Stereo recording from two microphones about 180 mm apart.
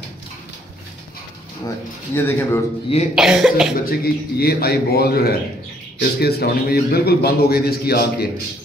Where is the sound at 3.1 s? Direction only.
5° right (ahead or behind).